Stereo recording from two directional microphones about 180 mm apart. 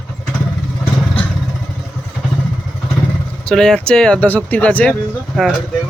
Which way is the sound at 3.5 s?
5° left (ahead or behind).